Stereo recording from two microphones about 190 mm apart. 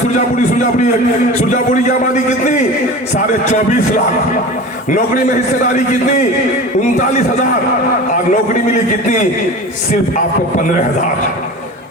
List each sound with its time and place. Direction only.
1.5 s a man's voice: 40° left (ahead or behind)
5.7 s a man's voice: 40° left (ahead or behind)
8.1 s a man's voice: 40° left (ahead or behind)